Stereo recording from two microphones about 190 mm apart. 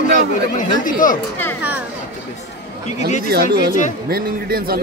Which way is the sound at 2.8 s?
40° left (ahead or behind).